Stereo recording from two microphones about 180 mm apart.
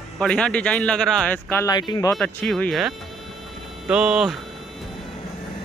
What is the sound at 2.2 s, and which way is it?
Speech, 5° left (ahead or behind).